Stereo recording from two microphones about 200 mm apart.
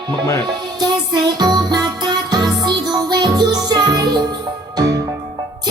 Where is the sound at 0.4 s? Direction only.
20° right (ahead or behind).